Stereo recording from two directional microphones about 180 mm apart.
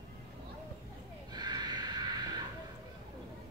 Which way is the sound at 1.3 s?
25° right (ahead or behind).